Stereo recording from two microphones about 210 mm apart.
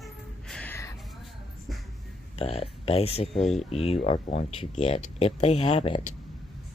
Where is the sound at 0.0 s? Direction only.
5° left (ahead or behind).